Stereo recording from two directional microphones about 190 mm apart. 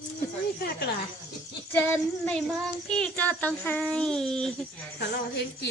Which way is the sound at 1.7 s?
10° left (ahead or behind).